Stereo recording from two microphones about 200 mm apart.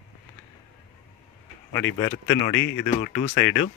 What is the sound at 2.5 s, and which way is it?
Speech, 60° left (ahead or behind).